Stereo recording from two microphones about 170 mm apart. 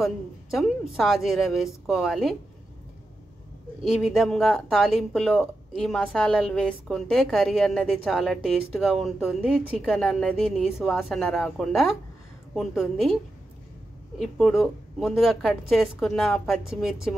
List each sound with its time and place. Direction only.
0.0 s speech: centre (ahead or behind)
3.8 s speech: centre (ahead or behind)